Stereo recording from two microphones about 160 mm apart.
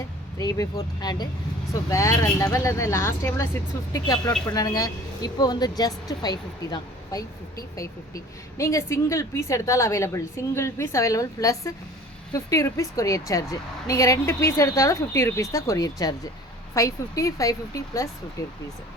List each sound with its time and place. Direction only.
0.3 s a woman's voice: 20° left (ahead or behind)